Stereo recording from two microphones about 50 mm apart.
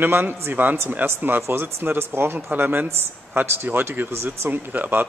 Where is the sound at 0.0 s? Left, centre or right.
Right.